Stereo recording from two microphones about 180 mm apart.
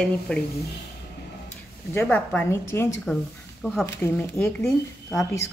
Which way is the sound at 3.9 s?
15° left (ahead or behind).